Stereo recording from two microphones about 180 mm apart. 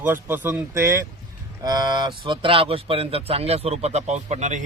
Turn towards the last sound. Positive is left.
turn(degrees=-40)  # may be behind; listen again after turning